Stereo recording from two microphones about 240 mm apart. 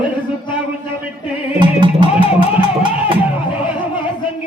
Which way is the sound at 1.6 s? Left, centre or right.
Centre.